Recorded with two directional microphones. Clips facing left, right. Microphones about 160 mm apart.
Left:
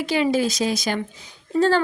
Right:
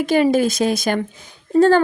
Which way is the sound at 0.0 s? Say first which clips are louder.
Right 5 dB; 50° right (ahead or behind).